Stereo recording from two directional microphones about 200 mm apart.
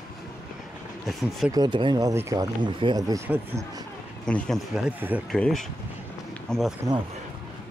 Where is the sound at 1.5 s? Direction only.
20° right (ahead or behind).